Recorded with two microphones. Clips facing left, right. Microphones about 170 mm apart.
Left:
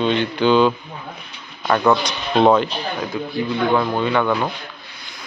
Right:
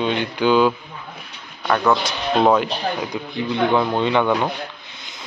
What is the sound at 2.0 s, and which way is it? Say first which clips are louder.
Speech: left 2 dB; 5° right (ahead or behind).